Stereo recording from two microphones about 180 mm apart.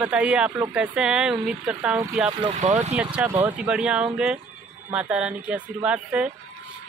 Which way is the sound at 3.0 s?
5° right (ahead or behind).